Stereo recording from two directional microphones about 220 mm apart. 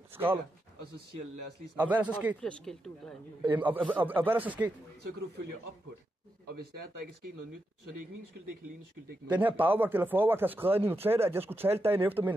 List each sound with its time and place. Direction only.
0.1 s a sound: 10° right (ahead or behind)
1.8 s speech: 5° right (ahead or behind)
3.4 s speech: 10° right (ahead or behind)
9.3 s speech: 10° right (ahead or behind)